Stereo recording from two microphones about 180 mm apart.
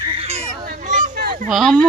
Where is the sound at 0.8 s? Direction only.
45° right (ahead or behind).